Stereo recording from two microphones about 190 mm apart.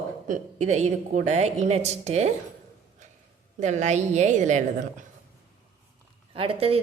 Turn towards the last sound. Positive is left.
turn(degrees=-30)  # may be behind; listen again after turning